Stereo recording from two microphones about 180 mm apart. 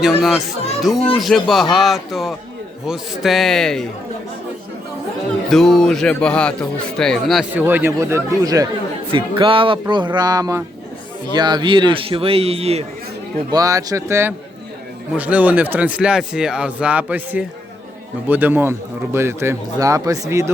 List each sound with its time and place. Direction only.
0.0 s speech: centre (ahead or behind)
5.5 s speech: centre (ahead or behind)
7.6 s speech: 10° right (ahead or behind); by 12.8 s 35° right (ahead or behind)
13.5 s speech: 20° right (ahead or behind)